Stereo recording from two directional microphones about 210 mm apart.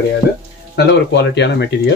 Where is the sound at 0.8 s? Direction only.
55° left (ahead or behind).